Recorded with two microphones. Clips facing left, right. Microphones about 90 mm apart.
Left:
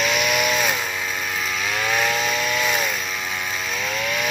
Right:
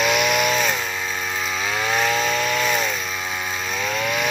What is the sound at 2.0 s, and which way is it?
Chainsaw, centre (ahead or behind).